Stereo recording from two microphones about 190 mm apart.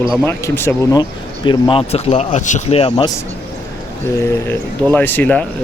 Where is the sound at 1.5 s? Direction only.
25° left (ahead or behind).